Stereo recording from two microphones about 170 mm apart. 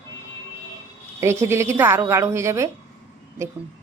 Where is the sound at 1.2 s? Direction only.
15° right (ahead or behind).